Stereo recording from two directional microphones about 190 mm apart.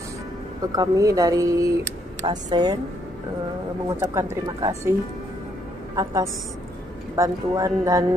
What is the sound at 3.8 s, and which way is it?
A woman's voice, 15° right (ahead or behind).